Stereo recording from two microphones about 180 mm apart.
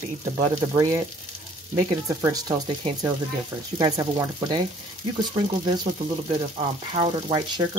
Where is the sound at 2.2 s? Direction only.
20° right (ahead or behind).